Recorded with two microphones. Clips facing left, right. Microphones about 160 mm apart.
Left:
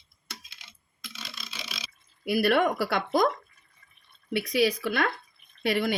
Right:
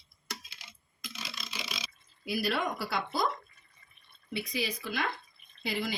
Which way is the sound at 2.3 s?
65° left (ahead or behind).